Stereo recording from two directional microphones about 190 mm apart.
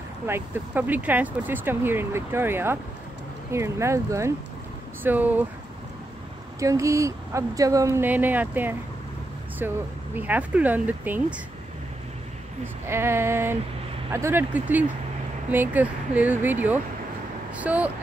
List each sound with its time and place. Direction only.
0.3 s speech: 10° right (ahead or behind)
6.6 s speech: 15° right (ahead or behind)
12.8 s speech: 15° right (ahead or behind)